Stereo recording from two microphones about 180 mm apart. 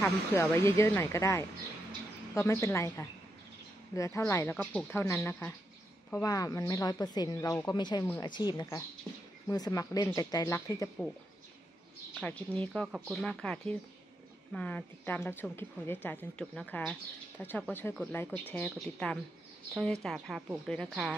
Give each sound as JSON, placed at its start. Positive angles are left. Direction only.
{"t": 0.0, "sound": "a woman's voice", "side_deg": 15}
{"t": 12.2, "sound": "a woman's voice", "side_deg": 10}